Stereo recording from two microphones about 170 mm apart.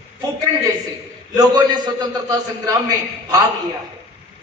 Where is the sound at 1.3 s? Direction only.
25° right (ahead or behind).